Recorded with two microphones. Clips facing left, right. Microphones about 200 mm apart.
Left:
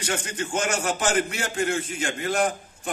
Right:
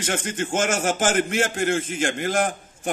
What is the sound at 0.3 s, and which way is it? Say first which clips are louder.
Speech: right 4 dB; 45° right (ahead or behind).